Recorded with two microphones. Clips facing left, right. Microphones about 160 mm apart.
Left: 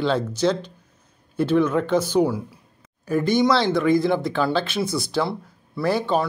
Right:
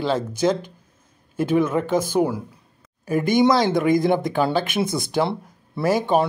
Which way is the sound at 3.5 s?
15° right (ahead or behind).